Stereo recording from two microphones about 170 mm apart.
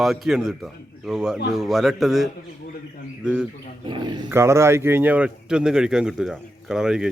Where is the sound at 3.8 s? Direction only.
25° right (ahead or behind).